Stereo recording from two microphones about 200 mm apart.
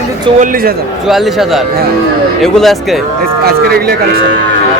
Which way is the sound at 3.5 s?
50° right (ahead or behind).